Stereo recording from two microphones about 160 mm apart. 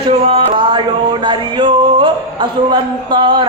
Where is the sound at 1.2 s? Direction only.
30° right (ahead or behind).